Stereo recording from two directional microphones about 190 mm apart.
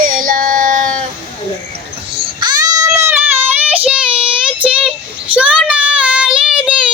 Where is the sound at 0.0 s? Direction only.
45° right (ahead or behind).